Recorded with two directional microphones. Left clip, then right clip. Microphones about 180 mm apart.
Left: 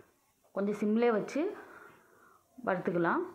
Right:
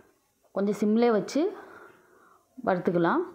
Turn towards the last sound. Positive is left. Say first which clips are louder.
# right 5 dB
turn(degrees=-50)  # may be behind; listen again after turning